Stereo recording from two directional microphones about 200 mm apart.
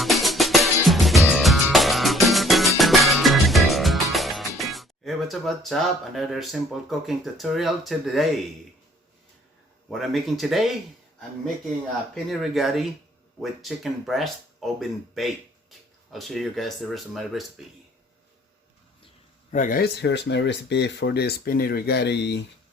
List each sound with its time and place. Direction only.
0.0 s music: centre (ahead or behind)
7.1 s speech: centre (ahead or behind)
9.9 s speech: centre (ahead or behind)
12.1 s speech: centre (ahead or behind)
19.5 s speech: 40° left (ahead or behind); by 22.4 s 60° left (ahead or behind)